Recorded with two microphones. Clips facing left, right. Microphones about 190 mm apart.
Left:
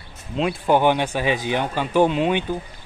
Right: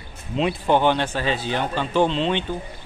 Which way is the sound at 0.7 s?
10° left (ahead or behind).